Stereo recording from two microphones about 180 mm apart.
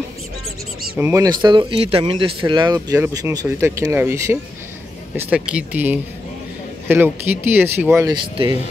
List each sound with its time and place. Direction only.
0.9 s speech: 15° right (ahead or behind)